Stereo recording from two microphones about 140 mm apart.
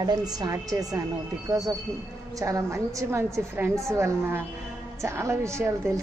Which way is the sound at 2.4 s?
25° right (ahead or behind).